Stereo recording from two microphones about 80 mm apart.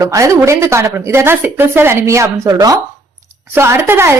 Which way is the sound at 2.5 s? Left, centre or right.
Right.